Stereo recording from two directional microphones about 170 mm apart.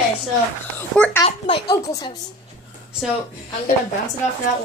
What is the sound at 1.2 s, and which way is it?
Speech, 25° left (ahead or behind).